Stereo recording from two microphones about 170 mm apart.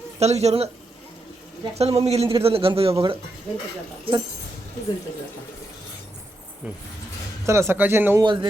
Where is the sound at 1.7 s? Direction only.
35° right (ahead or behind).